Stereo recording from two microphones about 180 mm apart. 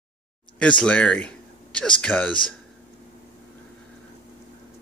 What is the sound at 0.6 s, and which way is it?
Speech, 5° left (ahead or behind).